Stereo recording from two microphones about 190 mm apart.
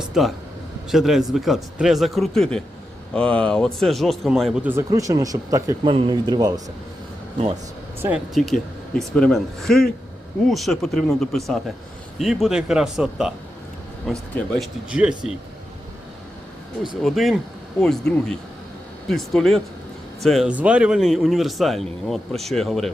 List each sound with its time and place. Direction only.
0.0 s a sound: centre (ahead or behind)
0.9 s a man's voice: centre (ahead or behind); by 6.5 s 20° right (ahead or behind)
8.0 s a man's voice: 5° right (ahead or behind)
17.0 s a man's voice: centre (ahead or behind)